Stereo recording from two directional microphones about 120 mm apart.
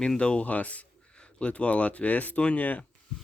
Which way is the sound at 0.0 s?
10° left (ahead or behind).